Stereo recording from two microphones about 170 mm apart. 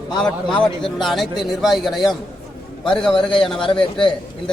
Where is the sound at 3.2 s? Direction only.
30° left (ahead or behind).